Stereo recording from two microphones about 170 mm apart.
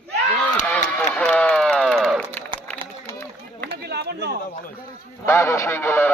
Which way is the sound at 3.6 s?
70° right (ahead or behind).